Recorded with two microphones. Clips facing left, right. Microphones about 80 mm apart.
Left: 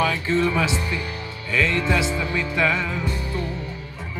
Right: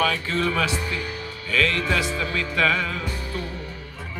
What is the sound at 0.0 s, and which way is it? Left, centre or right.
Speech, centre.